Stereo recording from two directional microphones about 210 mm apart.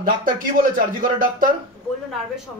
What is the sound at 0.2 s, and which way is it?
A man's voice, 40° right (ahead or behind).